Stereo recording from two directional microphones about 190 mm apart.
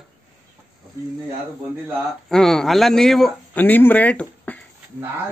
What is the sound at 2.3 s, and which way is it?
A man's voice, centre (ahead or behind).